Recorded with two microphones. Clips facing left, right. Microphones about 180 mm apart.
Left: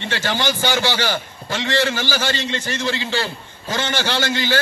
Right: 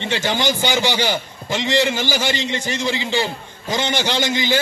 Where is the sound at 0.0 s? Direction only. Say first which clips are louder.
Right 2 dB; 15° right (ahead or behind).